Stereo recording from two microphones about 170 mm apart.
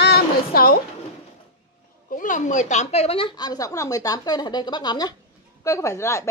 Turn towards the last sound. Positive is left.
turn(degrees=15)  # may be behind; listen again after turning